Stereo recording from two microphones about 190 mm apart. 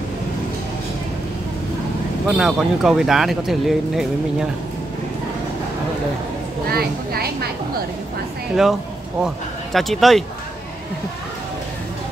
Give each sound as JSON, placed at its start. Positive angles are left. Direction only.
{"t": 2.2, "sound": "speech", "side_deg": 0}
{"t": 6.7, "sound": "a woman's voice", "side_deg": -55}
{"t": 9.2, "sound": "speech", "side_deg": 0}